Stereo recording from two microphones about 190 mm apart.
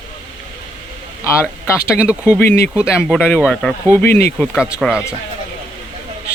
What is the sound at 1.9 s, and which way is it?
Speech, 5° right (ahead or behind).